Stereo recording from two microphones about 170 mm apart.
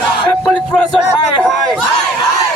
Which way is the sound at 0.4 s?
10° left (ahead or behind).